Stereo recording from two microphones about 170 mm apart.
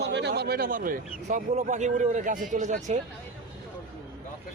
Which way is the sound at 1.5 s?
45° right (ahead or behind).